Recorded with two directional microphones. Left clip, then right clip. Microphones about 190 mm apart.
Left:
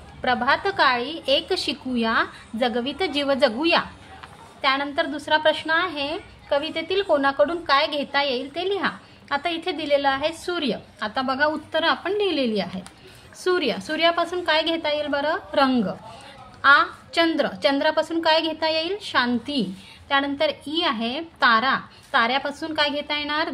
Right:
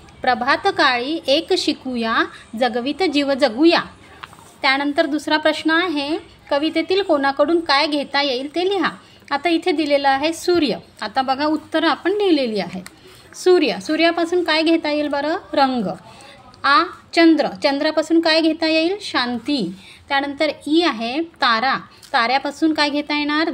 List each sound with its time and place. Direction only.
0.2 s a woman's voice: 25° right (ahead or behind)